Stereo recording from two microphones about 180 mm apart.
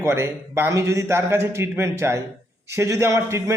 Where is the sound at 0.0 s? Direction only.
15° right (ahead or behind).